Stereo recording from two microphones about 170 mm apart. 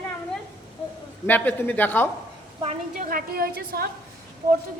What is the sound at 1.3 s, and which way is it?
Speech, 10° left (ahead or behind).